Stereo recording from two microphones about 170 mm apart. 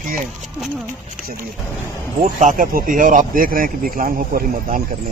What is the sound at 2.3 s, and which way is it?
Speech, 50° right (ahead or behind).